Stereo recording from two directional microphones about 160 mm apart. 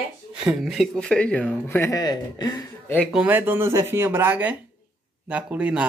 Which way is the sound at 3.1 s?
10° right (ahead or behind).